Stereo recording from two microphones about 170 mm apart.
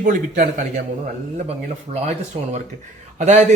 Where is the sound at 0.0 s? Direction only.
50° right (ahead or behind).